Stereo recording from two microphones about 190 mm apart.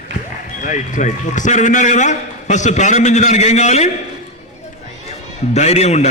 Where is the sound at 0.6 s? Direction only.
40° left (ahead or behind).